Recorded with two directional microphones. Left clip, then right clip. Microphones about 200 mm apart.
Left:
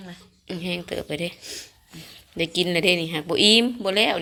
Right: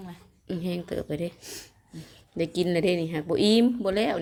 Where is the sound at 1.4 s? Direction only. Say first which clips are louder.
Left 5 dB; 60° right (ahead or behind).